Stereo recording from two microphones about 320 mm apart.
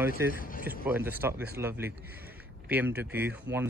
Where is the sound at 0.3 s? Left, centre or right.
Left.